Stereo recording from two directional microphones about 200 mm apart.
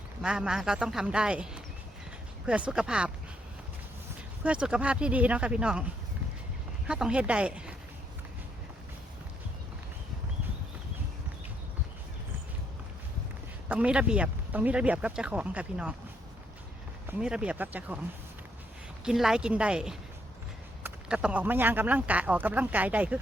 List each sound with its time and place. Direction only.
0.2 s speech: 5° right (ahead or behind)
4.4 s speech: 5° right (ahead or behind)
6.8 s speech: 5° right (ahead or behind)
13.7 s speech: 5° right (ahead or behind)
17.1 s speech: 5° right (ahead or behind)
19.0 s speech: centre (ahead or behind)